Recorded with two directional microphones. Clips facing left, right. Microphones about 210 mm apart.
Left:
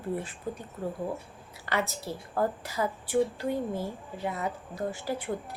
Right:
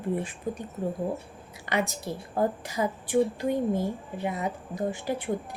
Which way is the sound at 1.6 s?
15° right (ahead or behind).